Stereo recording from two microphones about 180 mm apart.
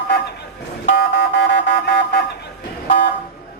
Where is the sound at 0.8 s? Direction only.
75° left (ahead or behind).